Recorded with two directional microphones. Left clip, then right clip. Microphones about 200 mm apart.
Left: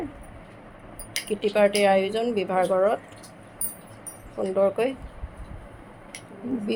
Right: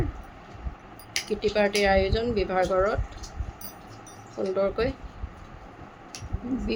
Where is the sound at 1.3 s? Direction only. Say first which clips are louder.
Left 4 dB; 15° left (ahead or behind).